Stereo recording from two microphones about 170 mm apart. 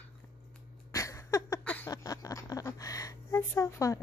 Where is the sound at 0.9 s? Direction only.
20° left (ahead or behind).